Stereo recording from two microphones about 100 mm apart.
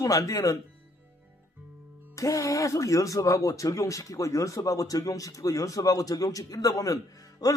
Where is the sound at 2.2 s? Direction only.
35° left (ahead or behind).